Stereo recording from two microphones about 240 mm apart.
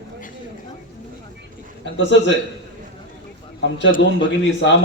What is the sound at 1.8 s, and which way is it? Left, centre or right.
Speech, left.